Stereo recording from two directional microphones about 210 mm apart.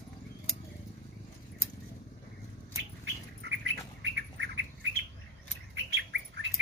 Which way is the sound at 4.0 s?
55° right (ahead or behind).